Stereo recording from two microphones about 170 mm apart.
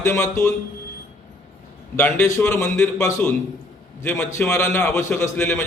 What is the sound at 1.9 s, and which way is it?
A man's voice, 15° left (ahead or behind).